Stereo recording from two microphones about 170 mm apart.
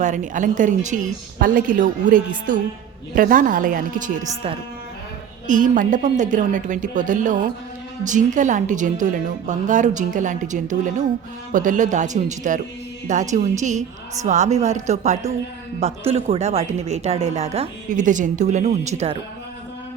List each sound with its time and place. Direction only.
0.0 s a woman's voice: 50° right (ahead or behind)
5.5 s a woman's voice: 50° right (ahead or behind)